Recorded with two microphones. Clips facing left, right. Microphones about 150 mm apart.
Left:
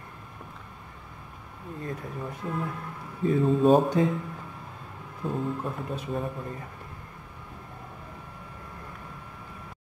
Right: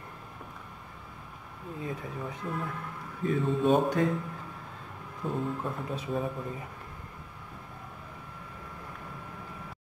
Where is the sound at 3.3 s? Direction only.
35° left (ahead or behind).